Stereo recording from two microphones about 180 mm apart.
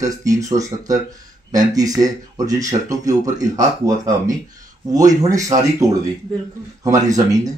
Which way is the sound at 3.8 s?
20° right (ahead or behind).